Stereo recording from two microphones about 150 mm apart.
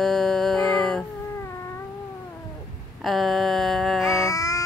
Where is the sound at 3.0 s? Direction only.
Centre (ahead or behind).